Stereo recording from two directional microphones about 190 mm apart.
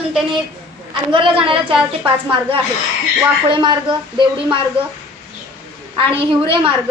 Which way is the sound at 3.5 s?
25° right (ahead or behind).